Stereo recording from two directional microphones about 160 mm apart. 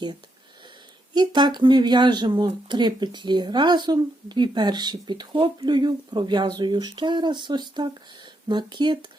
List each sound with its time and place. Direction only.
1.1 s speech: 25° right (ahead or behind)